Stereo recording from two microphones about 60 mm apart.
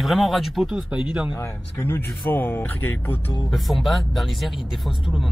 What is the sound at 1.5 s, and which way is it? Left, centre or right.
Speech, left.